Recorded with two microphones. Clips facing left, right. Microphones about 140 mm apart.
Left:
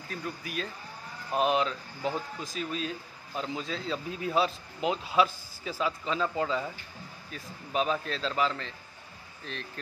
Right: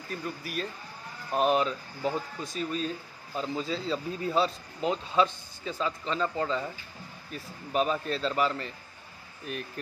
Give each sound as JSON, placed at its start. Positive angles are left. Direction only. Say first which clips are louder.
{"t": 0.1, "sound": "speech", "louder": "right 1 dB", "side_deg": -5}